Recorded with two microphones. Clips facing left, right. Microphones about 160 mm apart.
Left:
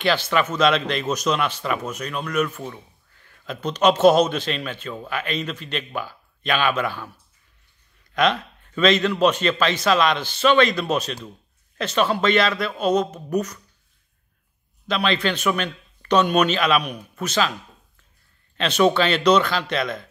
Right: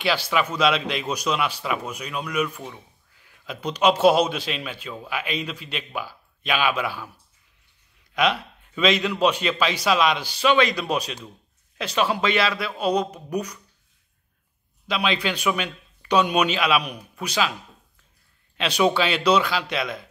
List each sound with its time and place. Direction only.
0.0 s a man's voice: 5° right (ahead or behind)
8.1 s a man's voice: 10° right (ahead or behind)
14.9 s a man's voice: 10° right (ahead or behind)
18.6 s a man's voice: 10° right (ahead or behind)